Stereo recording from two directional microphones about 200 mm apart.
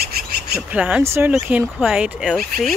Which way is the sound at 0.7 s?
5° right (ahead or behind).